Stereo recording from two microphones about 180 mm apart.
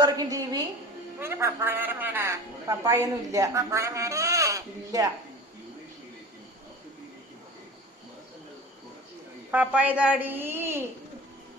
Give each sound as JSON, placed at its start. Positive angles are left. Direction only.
{"t": 0.0, "sound": "a woman's voice", "side_deg": -20}
{"t": 9.5, "sound": "a woman's voice", "side_deg": -5}